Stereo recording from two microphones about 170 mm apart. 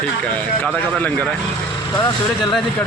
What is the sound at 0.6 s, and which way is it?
Speech, 10° left (ahead or behind).